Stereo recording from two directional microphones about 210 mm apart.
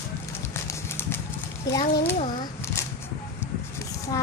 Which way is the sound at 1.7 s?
15° left (ahead or behind).